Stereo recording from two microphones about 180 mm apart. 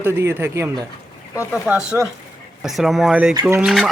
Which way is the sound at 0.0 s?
15° right (ahead or behind).